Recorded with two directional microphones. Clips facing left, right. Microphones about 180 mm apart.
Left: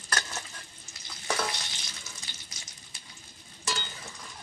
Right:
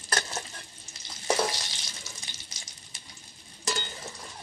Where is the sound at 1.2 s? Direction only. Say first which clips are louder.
Right 5 dB; 25° right (ahead or behind).